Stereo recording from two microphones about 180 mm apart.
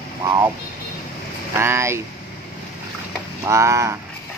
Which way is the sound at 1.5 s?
15° right (ahead or behind).